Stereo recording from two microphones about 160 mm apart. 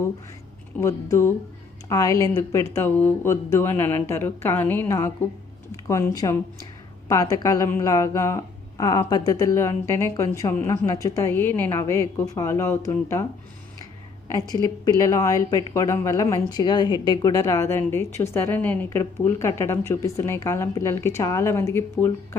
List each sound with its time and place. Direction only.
0.8 s speech: 20° left (ahead or behind)
14.3 s speech: 25° left (ahead or behind)